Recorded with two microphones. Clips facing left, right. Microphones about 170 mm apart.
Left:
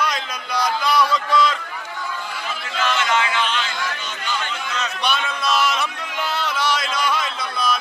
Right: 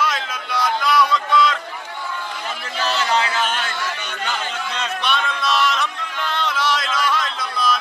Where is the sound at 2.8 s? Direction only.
35° right (ahead or behind).